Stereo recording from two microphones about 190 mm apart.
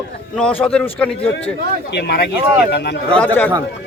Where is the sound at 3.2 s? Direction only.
10° left (ahead or behind).